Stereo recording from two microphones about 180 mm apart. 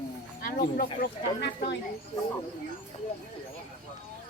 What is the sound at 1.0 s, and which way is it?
Speech, 70° left (ahead or behind).